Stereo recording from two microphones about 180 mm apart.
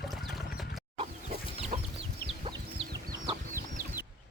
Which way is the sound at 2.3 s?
30° right (ahead or behind).